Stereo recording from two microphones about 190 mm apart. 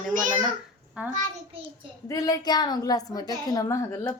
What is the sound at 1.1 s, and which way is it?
Speech, 40° right (ahead or behind).